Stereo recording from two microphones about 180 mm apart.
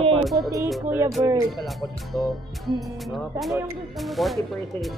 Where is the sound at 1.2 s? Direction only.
15° right (ahead or behind).